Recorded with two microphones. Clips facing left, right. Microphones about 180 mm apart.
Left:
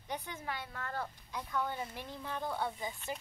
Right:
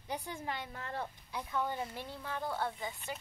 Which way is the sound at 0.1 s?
10° right (ahead or behind).